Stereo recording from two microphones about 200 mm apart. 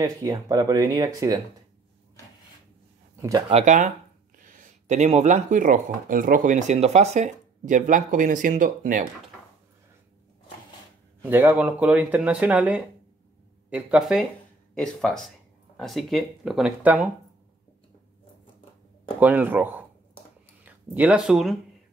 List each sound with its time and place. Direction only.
0.0 s speech: 20° right (ahead or behind)
3.2 s speech: 20° right (ahead or behind); by 9.0 s 40° right (ahead or behind)
11.2 s speech: 10° right (ahead or behind)
19.1 s speech: 10° right (ahead or behind)